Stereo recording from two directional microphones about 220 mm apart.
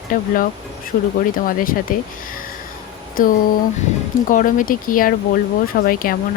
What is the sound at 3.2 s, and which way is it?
Speech, 40° left (ahead or behind).